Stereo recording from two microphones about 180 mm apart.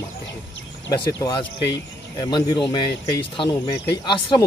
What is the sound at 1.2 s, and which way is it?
Speech, 25° left (ahead or behind).